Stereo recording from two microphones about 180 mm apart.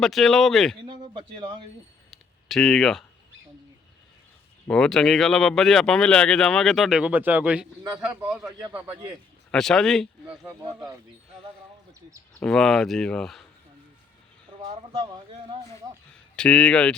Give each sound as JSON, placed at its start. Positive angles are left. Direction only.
{"t": 0.0, "sound": "speech", "side_deg": 0}
{"t": 0.9, "sound": "a sound", "side_deg": -25}
{"t": 2.0, "sound": "a sound", "side_deg": 0}
{"t": 4.7, "sound": "a man's voice", "side_deg": 5}
{"t": 9.5, "sound": "speech", "side_deg": 5}
{"t": 12.4, "sound": "speech", "side_deg": 5}
{"t": 14.6, "sound": "speech", "side_deg": -30}
{"t": 16.3, "sound": "speech", "side_deg": 5}